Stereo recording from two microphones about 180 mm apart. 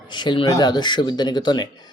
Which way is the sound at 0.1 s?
25° left (ahead or behind).